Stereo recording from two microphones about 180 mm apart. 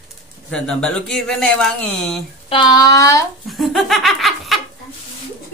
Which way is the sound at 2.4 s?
25° left (ahead or behind).